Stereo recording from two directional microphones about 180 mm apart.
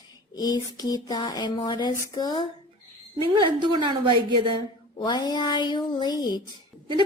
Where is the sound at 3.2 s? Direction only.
25° right (ahead or behind).